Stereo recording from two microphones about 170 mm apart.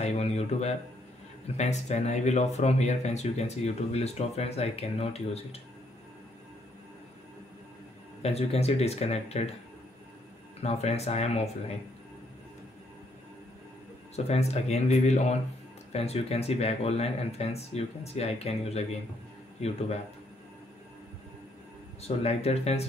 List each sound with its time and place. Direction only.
0.0 s a sound: 40° left (ahead or behind)
1.6 s speech: 45° left (ahead or behind)
8.2 s speech: 35° left (ahead or behind)
10.6 s speech: 40° left (ahead or behind)
14.1 s speech: 40° left (ahead or behind)
22.0 s speech: 35° left (ahead or behind)